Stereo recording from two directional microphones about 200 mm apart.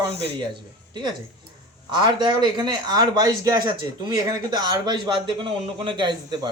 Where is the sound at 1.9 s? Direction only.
20° right (ahead or behind).